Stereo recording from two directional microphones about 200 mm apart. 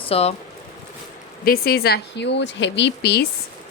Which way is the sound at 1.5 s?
50° left (ahead or behind).